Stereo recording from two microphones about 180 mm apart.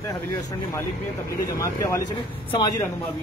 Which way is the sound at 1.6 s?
20° left (ahead or behind).